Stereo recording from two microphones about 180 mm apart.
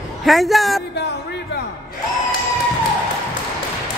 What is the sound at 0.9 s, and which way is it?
Speech, 70° left (ahead or behind).